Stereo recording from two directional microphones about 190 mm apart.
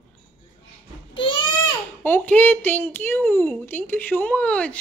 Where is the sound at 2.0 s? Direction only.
10° left (ahead or behind).